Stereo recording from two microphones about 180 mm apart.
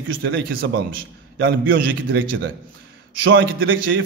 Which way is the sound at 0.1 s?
90° right.